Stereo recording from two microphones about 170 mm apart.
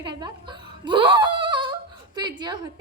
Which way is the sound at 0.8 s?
30° right (ahead or behind).